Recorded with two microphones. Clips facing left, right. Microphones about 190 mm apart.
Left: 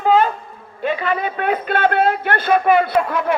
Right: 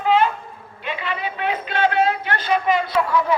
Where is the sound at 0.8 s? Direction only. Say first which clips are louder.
Left 7 dB; 45° left (ahead or behind).